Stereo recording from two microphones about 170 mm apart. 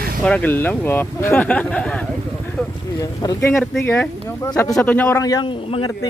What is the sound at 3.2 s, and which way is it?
Speech, 20° left (ahead or behind).